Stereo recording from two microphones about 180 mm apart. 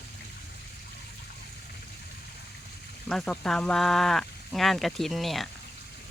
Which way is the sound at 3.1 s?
5° left (ahead or behind).